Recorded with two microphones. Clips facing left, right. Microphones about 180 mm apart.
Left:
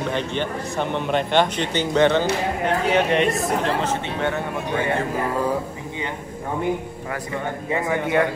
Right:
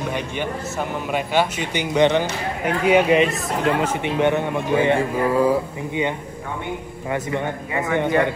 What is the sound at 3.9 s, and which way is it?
A man's voice, 15° right (ahead or behind).